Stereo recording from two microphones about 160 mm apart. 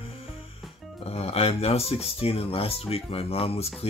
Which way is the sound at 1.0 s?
40° left (ahead or behind).